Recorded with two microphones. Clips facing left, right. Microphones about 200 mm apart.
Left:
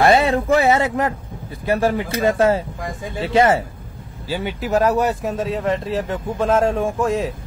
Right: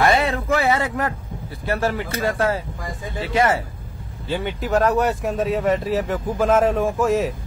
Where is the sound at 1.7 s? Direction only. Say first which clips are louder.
Left 4 dB; 15° left (ahead or behind).